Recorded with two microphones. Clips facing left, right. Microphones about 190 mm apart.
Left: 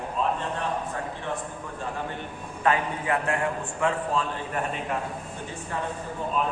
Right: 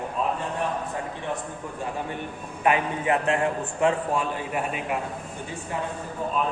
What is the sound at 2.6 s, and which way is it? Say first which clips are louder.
A man's voice: right 2 dB; 20° right (ahead or behind).